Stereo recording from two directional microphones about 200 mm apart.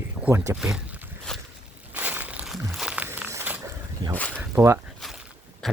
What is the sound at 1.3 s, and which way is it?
Walk, 5° left (ahead or behind).